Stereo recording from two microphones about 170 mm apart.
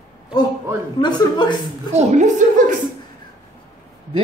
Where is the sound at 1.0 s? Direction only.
25° left (ahead or behind).